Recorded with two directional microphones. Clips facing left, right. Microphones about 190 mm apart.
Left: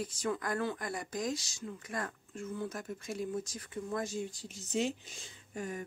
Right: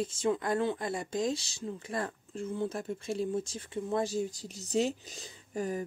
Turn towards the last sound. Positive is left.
turn(degrees=-35)  # may be behind; listen again after turning